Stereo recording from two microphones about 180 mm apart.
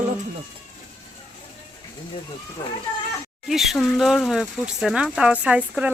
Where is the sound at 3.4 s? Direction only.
Centre (ahead or behind).